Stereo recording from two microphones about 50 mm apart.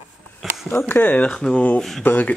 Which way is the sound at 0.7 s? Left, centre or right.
Left.